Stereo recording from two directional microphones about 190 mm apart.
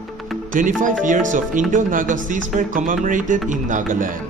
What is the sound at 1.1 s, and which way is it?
A man's voice, 45° right (ahead or behind).